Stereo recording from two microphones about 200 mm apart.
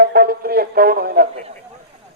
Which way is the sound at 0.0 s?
50° right (ahead or behind).